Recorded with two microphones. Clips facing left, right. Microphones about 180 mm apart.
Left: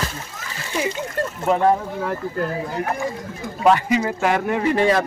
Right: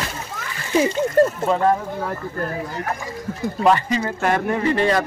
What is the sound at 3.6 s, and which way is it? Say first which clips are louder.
Speech: left 2 dB; 10° left (ahead or behind).